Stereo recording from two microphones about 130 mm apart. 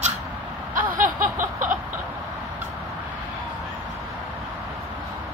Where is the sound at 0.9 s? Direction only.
90° right.